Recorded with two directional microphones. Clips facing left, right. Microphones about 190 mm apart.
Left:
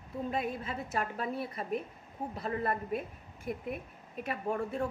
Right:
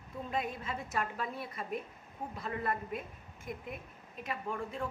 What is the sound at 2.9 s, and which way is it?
Speech, 55° left (ahead or behind).